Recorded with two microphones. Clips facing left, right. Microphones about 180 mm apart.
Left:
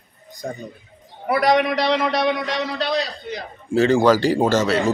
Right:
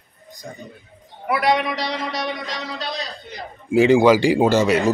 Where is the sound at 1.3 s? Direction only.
40° left (ahead or behind); by 2.8 s 55° left (ahead or behind).